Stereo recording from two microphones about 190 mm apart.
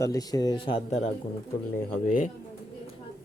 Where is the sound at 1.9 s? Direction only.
45° left (ahead or behind).